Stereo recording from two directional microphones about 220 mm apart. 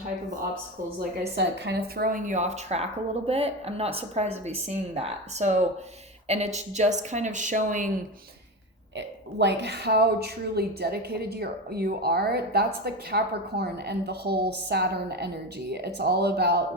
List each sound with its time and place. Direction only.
1.4 s speech: 45° right (ahead or behind)
9.0 s speech: 50° right (ahead or behind)